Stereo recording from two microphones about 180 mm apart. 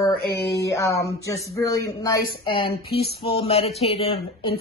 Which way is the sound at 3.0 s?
30° left (ahead or behind).